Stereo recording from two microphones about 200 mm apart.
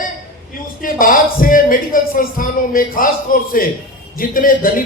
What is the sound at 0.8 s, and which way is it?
Speech, 45° left (ahead or behind).